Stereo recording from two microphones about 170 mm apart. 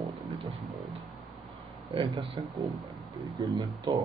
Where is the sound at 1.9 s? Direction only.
30° right (ahead or behind).